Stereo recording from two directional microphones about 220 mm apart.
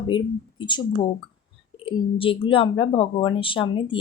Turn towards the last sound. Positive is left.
turn(degrees=20)  # may be behind; listen again after turning